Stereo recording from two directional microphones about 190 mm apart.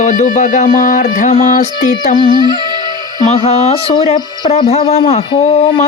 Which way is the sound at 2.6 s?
25° right (ahead or behind).